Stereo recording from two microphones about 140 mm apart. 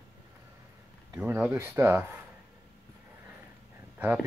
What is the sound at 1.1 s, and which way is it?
Speech, 15° right (ahead or behind).